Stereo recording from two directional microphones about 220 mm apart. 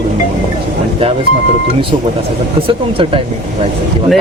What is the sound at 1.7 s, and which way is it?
Speech, 25° right (ahead or behind).